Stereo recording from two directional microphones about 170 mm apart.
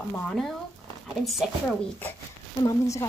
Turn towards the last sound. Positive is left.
turn(degrees=20)  # may be behind; listen again after turning